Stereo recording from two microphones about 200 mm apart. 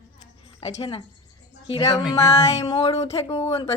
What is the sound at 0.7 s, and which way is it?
Music, 25° left (ahead or behind).